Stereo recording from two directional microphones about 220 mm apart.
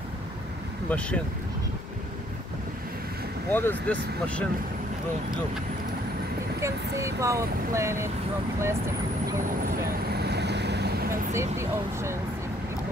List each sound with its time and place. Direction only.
0.8 s speech: 5° left (ahead or behind)
3.4 s speech: 10° left (ahead or behind)
6.6 s speech: 15° right (ahead or behind)
10.1 s vehicle: 50° right (ahead or behind)
11.1 s speech: 10° right (ahead or behind)